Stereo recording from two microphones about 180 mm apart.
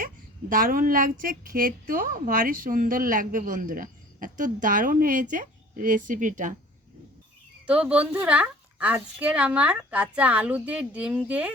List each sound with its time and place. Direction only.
0.5 s a woman's voice: 50° right (ahead or behind)
7.7 s a woman's voice: 5° right (ahead or behind)